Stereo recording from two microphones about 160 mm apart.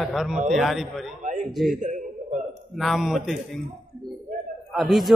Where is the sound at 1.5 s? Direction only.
Centre (ahead or behind).